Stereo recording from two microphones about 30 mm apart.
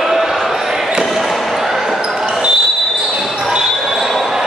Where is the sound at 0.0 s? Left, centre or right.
Centre.